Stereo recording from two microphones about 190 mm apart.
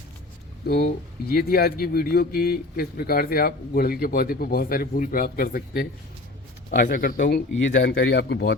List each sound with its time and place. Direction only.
0.9 s speech: 50° left (ahead or behind)
7.5 s speech: 80° left; by 8.5 s 65° left (ahead or behind)